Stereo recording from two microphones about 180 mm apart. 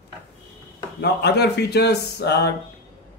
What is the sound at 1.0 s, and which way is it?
Speech, 65° left (ahead or behind).